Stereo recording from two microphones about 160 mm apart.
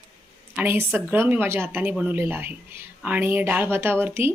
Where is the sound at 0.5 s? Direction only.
15° right (ahead or behind).